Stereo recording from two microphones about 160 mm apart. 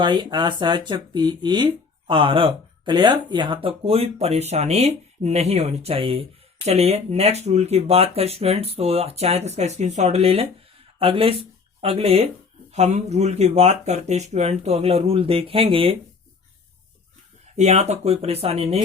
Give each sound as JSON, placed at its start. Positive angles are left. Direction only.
{"t": 0.0, "sound": "speech", "side_deg": -30}
{"t": 17.4, "sound": "speech", "side_deg": -45}